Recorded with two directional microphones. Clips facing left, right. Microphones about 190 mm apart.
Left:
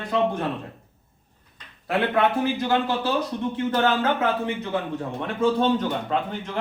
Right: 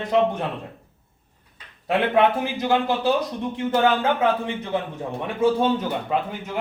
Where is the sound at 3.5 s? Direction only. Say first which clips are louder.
Right 3 dB; 15° right (ahead or behind).